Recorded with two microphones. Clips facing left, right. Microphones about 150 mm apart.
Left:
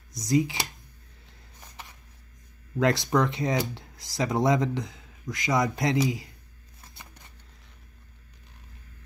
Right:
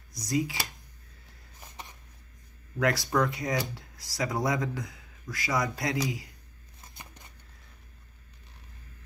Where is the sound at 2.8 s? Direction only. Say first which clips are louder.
Left 3 dB; 20° left (ahead or behind).